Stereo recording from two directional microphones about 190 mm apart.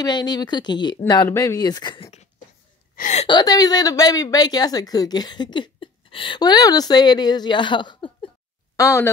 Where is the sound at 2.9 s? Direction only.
40° left (ahead or behind).